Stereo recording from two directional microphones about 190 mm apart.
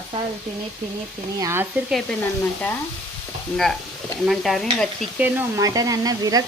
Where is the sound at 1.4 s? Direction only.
15° right (ahead or behind).